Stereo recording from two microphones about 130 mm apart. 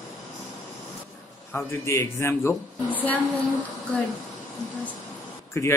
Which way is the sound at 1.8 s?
20° left (ahead or behind).